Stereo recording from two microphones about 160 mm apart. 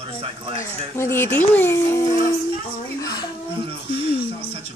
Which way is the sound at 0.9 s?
15° left (ahead or behind).